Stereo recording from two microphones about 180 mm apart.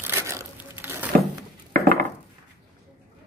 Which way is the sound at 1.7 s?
55° right (ahead or behind).